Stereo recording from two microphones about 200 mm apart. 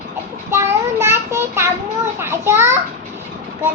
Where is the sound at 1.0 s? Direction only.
15° right (ahead or behind).